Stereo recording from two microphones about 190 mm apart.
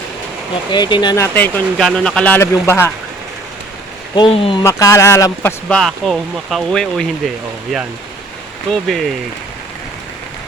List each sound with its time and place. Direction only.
0.7 s speech: 25° left (ahead or behind)
4.1 s speech: 25° left (ahead or behind)
4.6 s speech: 15° left (ahead or behind)
8.7 s speech: centre (ahead or behind)